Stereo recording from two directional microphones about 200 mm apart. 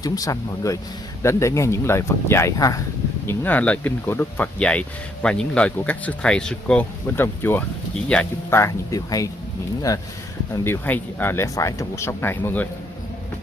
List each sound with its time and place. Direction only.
0.0 s speech: 20° left (ahead or behind)
10.5 s speech: 10° left (ahead or behind)